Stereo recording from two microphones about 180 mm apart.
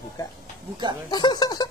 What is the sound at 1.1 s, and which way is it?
Speech, 25° left (ahead or behind).